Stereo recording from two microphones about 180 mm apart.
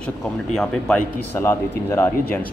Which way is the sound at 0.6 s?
5° left (ahead or behind).